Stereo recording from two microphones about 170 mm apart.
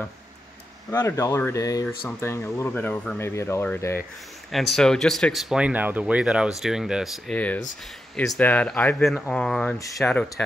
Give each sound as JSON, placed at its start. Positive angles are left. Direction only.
{"t": 0.8, "sound": "speech", "side_deg": 15}
{"t": 4.5, "sound": "speech", "side_deg": 0}
{"t": 7.3, "sound": "speech", "side_deg": 10}